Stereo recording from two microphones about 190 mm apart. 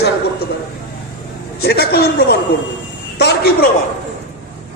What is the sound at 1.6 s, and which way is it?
A man's voice, 55° left (ahead or behind).